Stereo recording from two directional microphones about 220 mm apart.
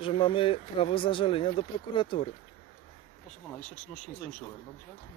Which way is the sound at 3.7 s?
35° left (ahead or behind).